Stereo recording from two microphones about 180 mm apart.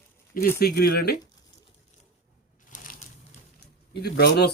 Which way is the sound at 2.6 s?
45° left (ahead or behind).